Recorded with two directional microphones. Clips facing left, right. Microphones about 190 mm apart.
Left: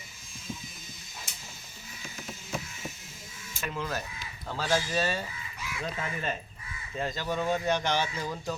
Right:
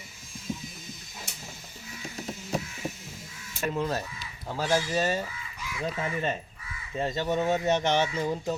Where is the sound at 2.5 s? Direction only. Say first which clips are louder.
Right 5 dB; 35° right (ahead or behind).